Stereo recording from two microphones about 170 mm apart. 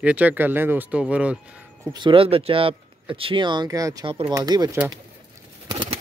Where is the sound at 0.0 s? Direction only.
10° right (ahead or behind).